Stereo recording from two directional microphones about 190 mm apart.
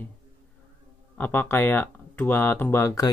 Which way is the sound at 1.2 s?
10° left (ahead or behind).